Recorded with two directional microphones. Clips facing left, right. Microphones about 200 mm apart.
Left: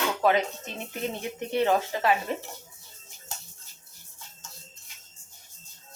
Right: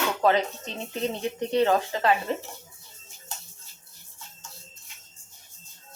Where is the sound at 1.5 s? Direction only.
15° left (ahead or behind).